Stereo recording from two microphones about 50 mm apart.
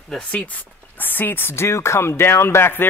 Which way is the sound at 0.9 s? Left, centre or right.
Left.